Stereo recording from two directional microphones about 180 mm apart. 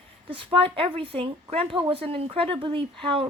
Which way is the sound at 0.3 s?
30° right (ahead or behind).